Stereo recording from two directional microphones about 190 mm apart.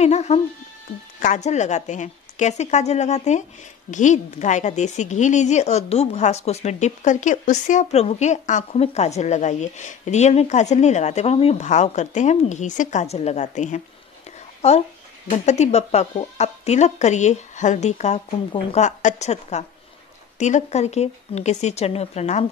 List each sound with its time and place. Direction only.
0.0 s a woman's voice: 35° left (ahead or behind)
15.2 s a woman's voice: 35° left (ahead or behind)